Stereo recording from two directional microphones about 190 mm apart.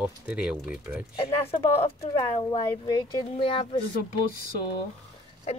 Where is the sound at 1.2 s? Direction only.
30° left (ahead or behind).